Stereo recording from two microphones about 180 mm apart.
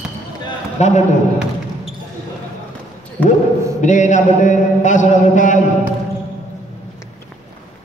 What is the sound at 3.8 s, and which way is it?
A man's voice, 45° left (ahead or behind).